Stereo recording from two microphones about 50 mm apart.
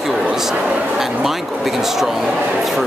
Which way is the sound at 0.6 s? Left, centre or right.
Right.